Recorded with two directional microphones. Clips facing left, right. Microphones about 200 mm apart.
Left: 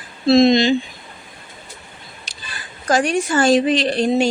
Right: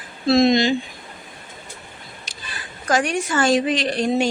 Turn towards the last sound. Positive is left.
turn(degrees=30)  # may be behind; listen again after turning